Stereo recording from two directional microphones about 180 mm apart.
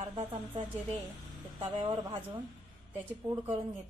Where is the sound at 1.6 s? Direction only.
30° right (ahead or behind).